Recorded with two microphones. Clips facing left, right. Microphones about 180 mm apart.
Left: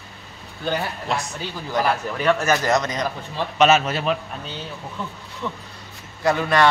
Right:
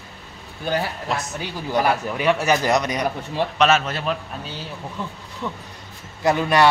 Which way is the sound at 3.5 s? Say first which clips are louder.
Left 3 dB; 5° left (ahead or behind).